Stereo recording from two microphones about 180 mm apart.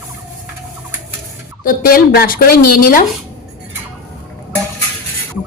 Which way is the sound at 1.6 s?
50° left (ahead or behind).